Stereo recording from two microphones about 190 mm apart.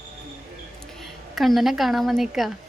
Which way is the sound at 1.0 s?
Centre (ahead or behind).